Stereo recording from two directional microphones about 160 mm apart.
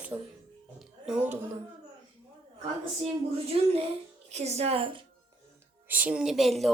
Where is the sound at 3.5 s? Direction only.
35° right (ahead or behind).